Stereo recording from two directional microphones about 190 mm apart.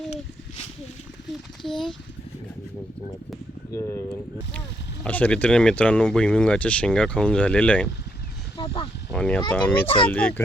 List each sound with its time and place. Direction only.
0.1 s a sound: 35° left (ahead or behind)
1.6 s speech: centre (ahead or behind)
3.8 s speech: 15° left (ahead or behind)
5.0 s speech: 5° left (ahead or behind)
8.5 s a sound: 30° left (ahead or behind)
9.1 s speech: 5° left (ahead or behind)
9.8 s speech: 30° left (ahead or behind)
10.1 s speech: 10° left (ahead or behind)